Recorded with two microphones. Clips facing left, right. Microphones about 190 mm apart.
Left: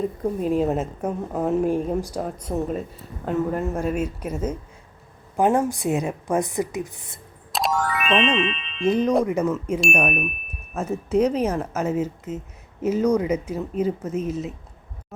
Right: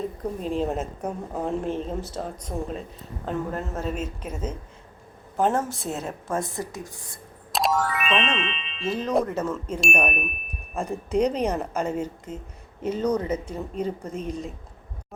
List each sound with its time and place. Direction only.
0.3 s speech: 5° left (ahead or behind)
7.5 s speech: centre (ahead or behind)
8.9 s speech: 15° left (ahead or behind)